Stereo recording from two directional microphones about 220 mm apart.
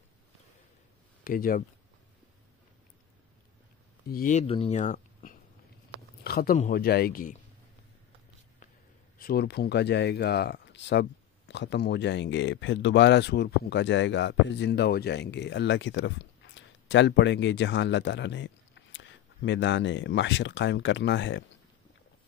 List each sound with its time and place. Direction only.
1.2 s speech: 40° left (ahead or behind)
4.1 s speech: 35° left (ahead or behind)
9.2 s speech: 45° left (ahead or behind)